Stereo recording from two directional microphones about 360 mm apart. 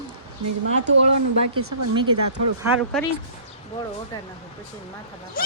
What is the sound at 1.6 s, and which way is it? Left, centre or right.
Speech, right.